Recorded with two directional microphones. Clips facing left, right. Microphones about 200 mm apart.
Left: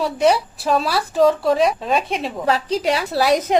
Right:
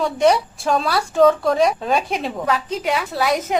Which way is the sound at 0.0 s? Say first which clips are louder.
Right 1 dB; 5° left (ahead or behind).